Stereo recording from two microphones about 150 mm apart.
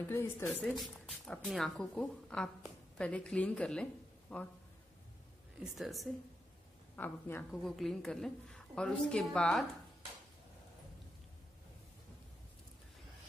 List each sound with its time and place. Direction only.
0.1 s a woman's voice: 15° left (ahead or behind)
0.5 s a woman's voice: centre (ahead or behind)
5.6 s a woman's voice: centre (ahead or behind)
7.0 s a woman's voice: 15° left (ahead or behind)
7.6 s a woman's voice: centre (ahead or behind)